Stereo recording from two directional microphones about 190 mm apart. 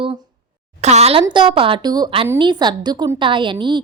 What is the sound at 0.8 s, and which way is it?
A woman's voice, 35° right (ahead or behind).